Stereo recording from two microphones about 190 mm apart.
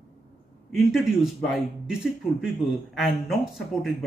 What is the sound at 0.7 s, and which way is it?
A man's voice, centre (ahead or behind).